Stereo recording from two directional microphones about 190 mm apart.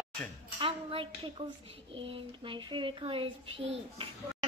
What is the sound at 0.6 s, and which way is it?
A child's voice, 30° right (ahead or behind).